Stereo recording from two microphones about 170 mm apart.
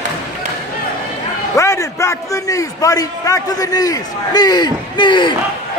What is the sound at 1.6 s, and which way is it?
A man's voice, 20° left (ahead or behind).